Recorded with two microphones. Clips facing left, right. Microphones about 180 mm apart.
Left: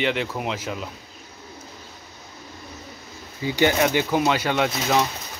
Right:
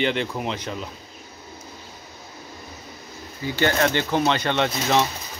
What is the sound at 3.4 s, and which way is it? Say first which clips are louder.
Speech: left 2 dB; 15° left (ahead or behind).